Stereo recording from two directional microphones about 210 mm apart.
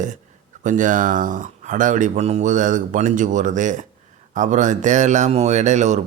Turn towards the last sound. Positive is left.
turn(degrees=-35)  # may be behind; listen again after turning